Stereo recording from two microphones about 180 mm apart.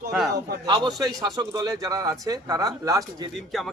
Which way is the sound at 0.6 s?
25° right (ahead or behind).